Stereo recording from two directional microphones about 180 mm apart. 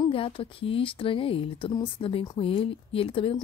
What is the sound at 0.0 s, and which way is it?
A woman's voice, 30° left (ahead or behind).